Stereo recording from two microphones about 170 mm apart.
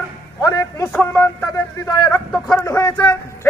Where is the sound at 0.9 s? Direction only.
10° left (ahead or behind).